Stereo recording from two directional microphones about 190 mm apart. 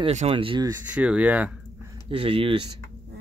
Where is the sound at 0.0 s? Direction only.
35° right (ahead or behind).